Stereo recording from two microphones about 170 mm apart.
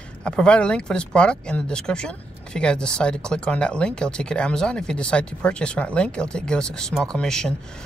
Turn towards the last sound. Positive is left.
turn(degrees=5)  # may be behind; listen again after turning